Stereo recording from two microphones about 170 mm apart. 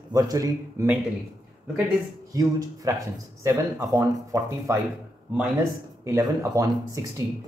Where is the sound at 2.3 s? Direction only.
20° right (ahead or behind).